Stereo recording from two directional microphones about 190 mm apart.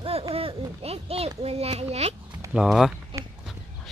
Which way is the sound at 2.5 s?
Centre (ahead or behind).